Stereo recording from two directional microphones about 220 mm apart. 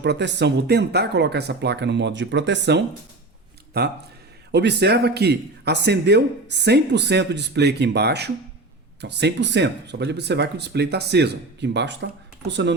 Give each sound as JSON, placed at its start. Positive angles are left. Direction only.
{"t": 0.0, "sound": "speech", "side_deg": -50}